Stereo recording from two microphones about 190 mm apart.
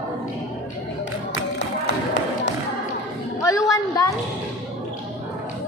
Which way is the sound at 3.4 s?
15° left (ahead or behind).